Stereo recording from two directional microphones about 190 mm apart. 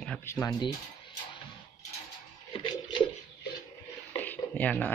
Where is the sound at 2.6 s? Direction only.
25° left (ahead or behind).